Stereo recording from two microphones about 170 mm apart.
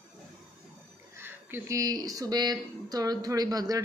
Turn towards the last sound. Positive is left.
turn(degrees=-20)  # may be behind; listen again after turning